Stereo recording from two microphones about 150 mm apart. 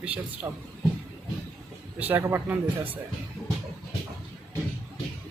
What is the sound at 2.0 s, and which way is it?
Speech, 15° right (ahead or behind).